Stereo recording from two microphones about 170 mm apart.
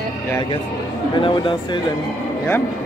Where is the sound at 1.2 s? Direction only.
30° left (ahead or behind).